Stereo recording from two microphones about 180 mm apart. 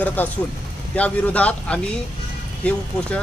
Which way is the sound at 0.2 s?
10° left (ahead or behind).